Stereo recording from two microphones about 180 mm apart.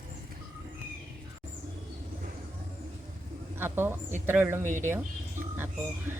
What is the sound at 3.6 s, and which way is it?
Speech, 10° right (ahead or behind).